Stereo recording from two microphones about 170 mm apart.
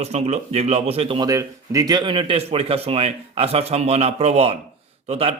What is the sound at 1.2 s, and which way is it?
Speech, 20° right (ahead or behind).